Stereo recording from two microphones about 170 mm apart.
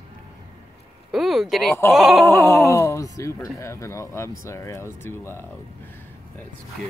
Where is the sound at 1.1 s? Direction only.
Centre (ahead or behind).